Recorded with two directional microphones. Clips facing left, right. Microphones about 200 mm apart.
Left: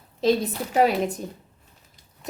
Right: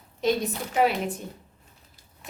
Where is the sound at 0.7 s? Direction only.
40° left (ahead or behind).